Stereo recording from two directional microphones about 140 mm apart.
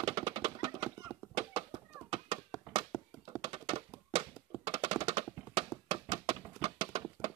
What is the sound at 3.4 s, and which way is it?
Typing, 40° right (ahead or behind).